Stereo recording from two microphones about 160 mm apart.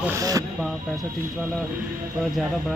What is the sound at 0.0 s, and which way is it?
Speech, 20° right (ahead or behind).